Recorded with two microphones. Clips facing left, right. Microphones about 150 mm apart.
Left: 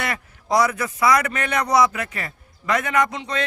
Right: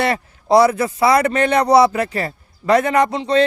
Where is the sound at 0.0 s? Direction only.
30° right (ahead or behind).